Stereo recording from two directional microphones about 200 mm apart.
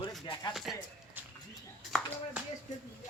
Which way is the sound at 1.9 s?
Centre (ahead or behind).